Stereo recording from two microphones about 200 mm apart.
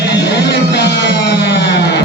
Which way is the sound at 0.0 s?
60° left (ahead or behind).